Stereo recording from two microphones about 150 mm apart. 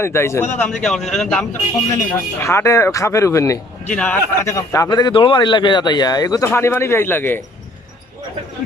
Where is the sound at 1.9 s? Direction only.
20° left (ahead or behind).